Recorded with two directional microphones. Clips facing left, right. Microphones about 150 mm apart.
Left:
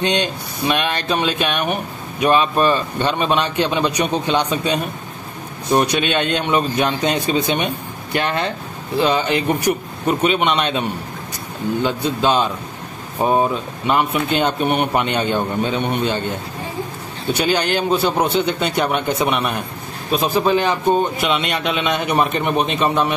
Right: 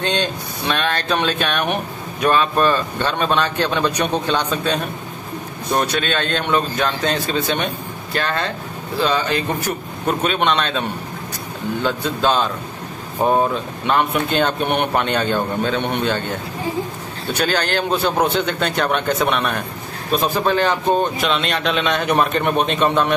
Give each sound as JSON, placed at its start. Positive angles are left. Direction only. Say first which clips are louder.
{"t": 0.0, "sound": "speech", "louder": "left 2 dB", "side_deg": 15}
{"t": 2.2, "sound": "speech", "louder": "left 1 dB", "side_deg": 15}
{"t": 11.8, "sound": "speech", "louder": "even", "side_deg": 10}
{"t": 17.3, "sound": "a man's voice", "louder": "left 2 dB", "side_deg": 10}